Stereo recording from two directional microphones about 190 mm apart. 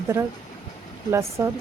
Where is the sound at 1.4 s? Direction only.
15° right (ahead or behind).